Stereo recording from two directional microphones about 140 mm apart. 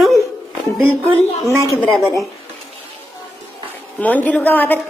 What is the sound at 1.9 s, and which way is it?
Speech, 10° right (ahead or behind).